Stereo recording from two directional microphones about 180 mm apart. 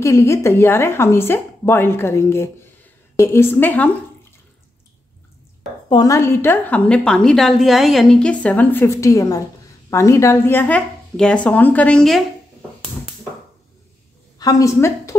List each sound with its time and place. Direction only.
0.0 s a woman's voice: 15° left (ahead or behind)
5.9 s a woman's voice: 20° left (ahead or behind); by 12.2 s 5° left (ahead or behind)
14.4 s a woman's voice: 20° left (ahead or behind)